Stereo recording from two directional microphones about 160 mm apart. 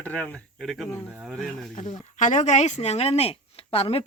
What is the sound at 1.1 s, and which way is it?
Speech, 10° right (ahead or behind).